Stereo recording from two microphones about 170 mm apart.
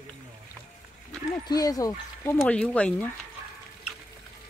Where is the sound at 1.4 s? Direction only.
20° left (ahead or behind).